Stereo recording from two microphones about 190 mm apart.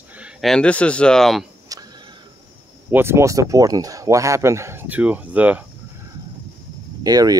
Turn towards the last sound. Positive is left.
turn(degrees=-20)  # may be behind; listen again after turning